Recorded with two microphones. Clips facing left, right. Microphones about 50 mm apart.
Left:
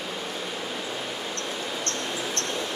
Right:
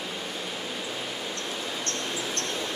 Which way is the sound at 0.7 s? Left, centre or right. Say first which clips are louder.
Left 2 dB; centre.